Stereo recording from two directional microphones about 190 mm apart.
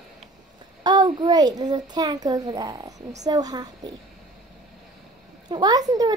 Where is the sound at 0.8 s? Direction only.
25° right (ahead or behind).